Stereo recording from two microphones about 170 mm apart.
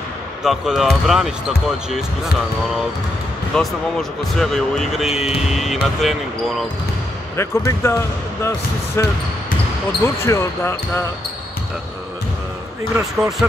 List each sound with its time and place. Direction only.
0.4 s speech: centre (ahead or behind)
3.5 s speech: 5° left (ahead or behind)
7.3 s speech: 15° left (ahead or behind)
10.0 s speech: 15° left (ahead or behind)
13.4 s speech: 10° right (ahead or behind)